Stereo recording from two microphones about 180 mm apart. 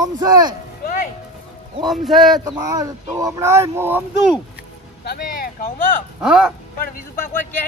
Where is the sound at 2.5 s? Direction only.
20° right (ahead or behind).